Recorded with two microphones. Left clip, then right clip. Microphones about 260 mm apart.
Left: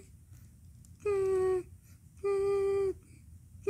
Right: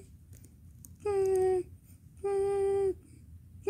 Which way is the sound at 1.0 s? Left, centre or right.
Centre.